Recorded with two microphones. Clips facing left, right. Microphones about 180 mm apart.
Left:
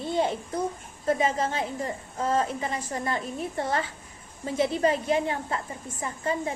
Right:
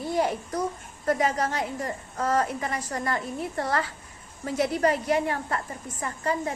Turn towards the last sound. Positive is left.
turn(degrees=25)  # may be behind; listen again after turning